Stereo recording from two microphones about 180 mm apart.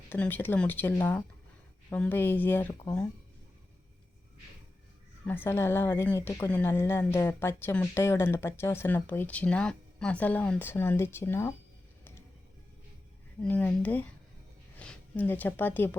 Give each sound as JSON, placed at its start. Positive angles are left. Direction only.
{"t": 0.1, "sound": "a woman's voice", "side_deg": 10}
{"t": 5.2, "sound": "a woman's voice", "side_deg": 10}
{"t": 13.4, "sound": "a woman's voice", "side_deg": 5}